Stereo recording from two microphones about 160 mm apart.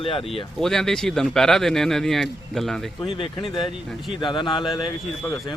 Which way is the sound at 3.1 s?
35° left (ahead or behind).